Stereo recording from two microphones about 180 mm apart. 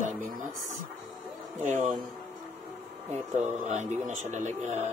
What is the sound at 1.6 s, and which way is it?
Speech, 40° right (ahead or behind).